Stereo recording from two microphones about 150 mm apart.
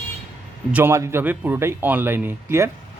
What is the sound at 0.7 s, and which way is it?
Speech, 15° right (ahead or behind).